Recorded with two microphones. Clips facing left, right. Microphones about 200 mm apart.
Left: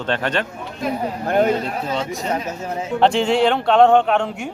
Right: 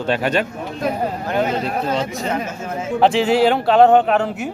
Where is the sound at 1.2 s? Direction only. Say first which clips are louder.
Left 4 dB; 50° left (ahead or behind).